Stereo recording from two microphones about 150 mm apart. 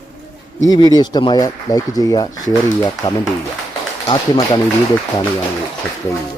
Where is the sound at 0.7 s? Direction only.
25° left (ahead or behind).